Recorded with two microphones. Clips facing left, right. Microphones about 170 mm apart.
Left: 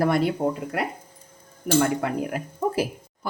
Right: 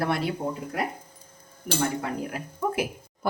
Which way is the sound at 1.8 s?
65° left (ahead or behind).